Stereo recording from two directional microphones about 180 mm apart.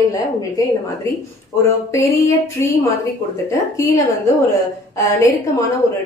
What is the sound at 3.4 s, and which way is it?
Speech, 20° left (ahead or behind).